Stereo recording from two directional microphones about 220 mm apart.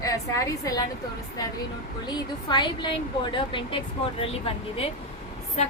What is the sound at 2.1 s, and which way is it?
A woman's voice, 20° left (ahead or behind).